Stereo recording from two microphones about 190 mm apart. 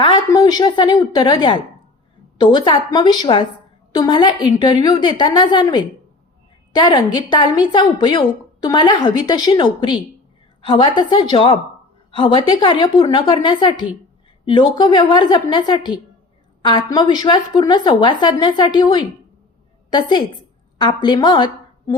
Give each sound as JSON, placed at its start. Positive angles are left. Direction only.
{"t": 0.0, "sound": "a woman's voice", "side_deg": 20}